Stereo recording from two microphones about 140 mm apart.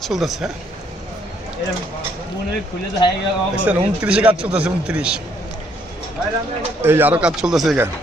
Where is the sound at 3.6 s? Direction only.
10° right (ahead or behind).